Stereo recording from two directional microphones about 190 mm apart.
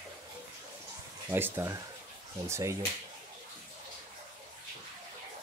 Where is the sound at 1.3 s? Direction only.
10° right (ahead or behind).